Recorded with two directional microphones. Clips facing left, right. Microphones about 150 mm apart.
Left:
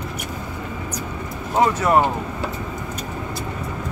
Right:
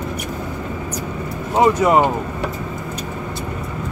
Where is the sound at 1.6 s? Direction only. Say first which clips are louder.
Right 3 dB; 15° right (ahead or behind).